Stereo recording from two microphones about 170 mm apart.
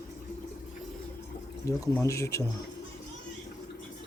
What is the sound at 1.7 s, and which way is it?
Speech, 15° left (ahead or behind).